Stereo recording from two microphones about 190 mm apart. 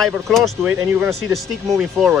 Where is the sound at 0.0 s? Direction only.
Centre (ahead or behind).